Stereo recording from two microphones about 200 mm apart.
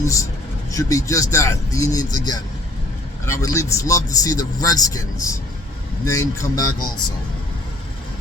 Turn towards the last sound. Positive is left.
turn(degrees=15)  # may be behind; listen again after turning